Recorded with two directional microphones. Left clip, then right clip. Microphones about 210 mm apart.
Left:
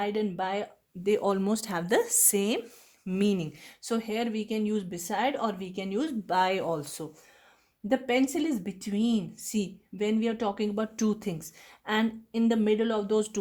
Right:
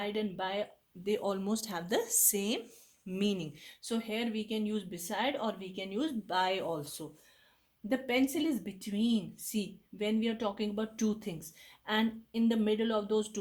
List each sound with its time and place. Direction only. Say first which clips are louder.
0.0 s speech: left 6 dB; 40° left (ahead or behind)